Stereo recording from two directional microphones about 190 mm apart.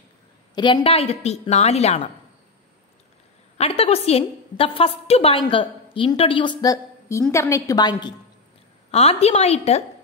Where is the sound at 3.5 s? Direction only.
30° left (ahead or behind).